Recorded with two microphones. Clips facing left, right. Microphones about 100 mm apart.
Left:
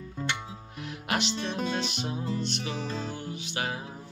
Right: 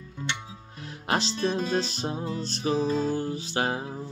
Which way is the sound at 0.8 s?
30° right (ahead or behind).